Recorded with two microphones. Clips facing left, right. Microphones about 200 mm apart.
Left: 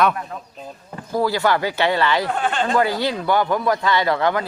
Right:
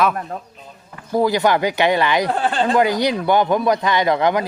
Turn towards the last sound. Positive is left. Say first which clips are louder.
# right 2 dB
turn(degrees=-15)  # may be behind; listen again after turning